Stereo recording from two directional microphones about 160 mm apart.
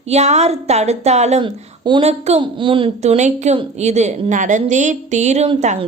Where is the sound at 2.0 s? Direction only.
40° right (ahead or behind).